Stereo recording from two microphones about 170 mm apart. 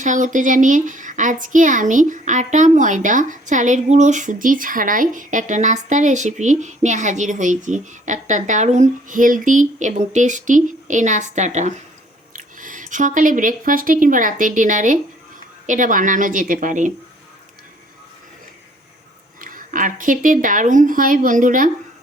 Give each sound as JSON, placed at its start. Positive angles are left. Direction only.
{"t": 0.0, "sound": "a child's voice", "side_deg": -45}
{"t": 19.4, "sound": "a woman's voice", "side_deg": -55}